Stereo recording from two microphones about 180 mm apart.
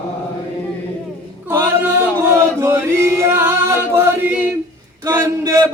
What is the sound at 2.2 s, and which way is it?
Chant, 15° right (ahead or behind).